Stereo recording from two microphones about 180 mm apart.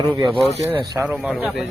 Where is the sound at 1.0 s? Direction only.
5° right (ahead or behind).